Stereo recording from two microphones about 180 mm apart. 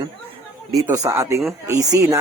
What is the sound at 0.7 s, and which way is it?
Speech, 15° right (ahead or behind).